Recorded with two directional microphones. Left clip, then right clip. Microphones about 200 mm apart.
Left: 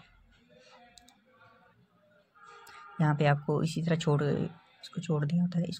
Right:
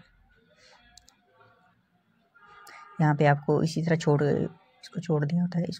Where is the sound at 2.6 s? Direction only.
20° right (ahead or behind).